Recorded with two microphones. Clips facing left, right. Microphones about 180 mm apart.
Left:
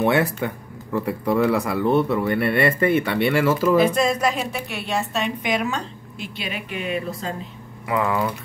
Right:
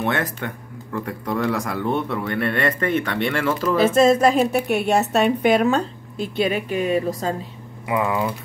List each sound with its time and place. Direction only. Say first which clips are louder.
0.0 s speech: left 4 dB; 10° left (ahead or behind)
3.9 s speech: right 6 dB; 25° right (ahead or behind)
4.4 s speech: right 9 dB; 50° right (ahead or behind)
5.1 s speech: right 7 dB; 40° right (ahead or behind)
7.8 s speech: even; 20° right (ahead or behind)